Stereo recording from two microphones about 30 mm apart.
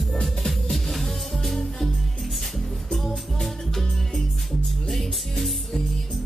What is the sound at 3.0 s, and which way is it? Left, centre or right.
Music, centre.